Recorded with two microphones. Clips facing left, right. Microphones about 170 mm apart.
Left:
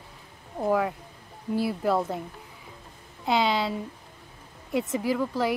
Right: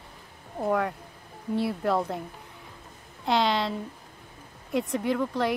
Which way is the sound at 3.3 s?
Centre (ahead or behind).